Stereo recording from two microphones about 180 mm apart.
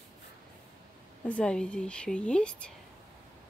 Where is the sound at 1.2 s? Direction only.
5° left (ahead or behind).